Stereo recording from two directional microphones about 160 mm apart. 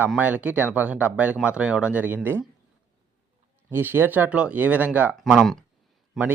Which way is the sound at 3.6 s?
15° right (ahead or behind).